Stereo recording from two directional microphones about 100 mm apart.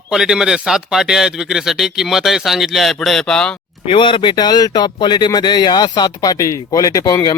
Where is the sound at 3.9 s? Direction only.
55° left (ahead or behind); by 7.3 s 35° left (ahead or behind).